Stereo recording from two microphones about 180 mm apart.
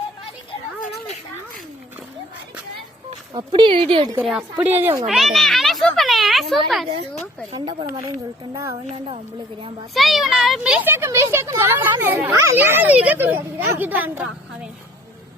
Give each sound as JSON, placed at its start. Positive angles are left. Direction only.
{"t": 3.3, "sound": "speech", "side_deg": -25}
{"t": 4.2, "sound": "speech", "side_deg": -5}
{"t": 5.0, "sound": "a woman's voice", "side_deg": 0}
{"t": 8.9, "sound": "a woman's voice", "side_deg": -35}
{"t": 9.9, "sound": "speech", "side_deg": 0}